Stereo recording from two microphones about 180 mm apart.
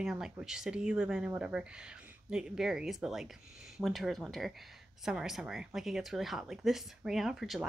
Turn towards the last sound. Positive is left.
turn(degrees=0)  # may be behind; listen again after turning